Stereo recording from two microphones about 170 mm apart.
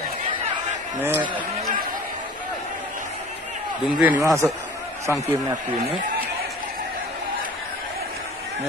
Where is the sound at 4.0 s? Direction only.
15° right (ahead or behind).